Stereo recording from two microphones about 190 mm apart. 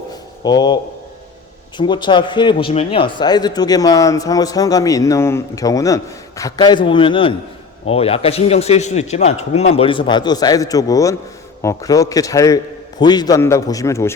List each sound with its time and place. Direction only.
0.4 s speech: 20° left (ahead or behind)
1.8 s a man's voice: 25° left (ahead or behind)